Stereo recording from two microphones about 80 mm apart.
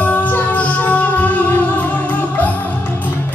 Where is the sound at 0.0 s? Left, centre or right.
Centre.